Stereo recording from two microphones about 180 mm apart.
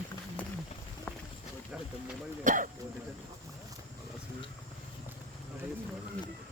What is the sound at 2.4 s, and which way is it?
Speech, 45° right (ahead or behind).